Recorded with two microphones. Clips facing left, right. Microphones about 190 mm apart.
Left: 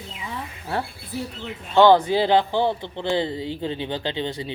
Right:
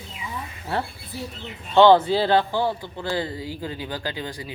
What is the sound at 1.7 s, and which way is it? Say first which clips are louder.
Speech: even; 15° left (ahead or behind).